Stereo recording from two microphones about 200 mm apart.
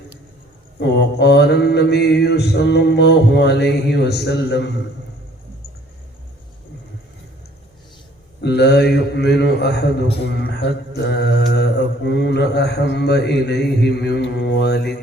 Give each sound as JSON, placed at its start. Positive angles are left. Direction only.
{"t": 0.8, "sound": "mantra", "side_deg": 60}
{"t": 8.4, "sound": "mantra", "side_deg": 55}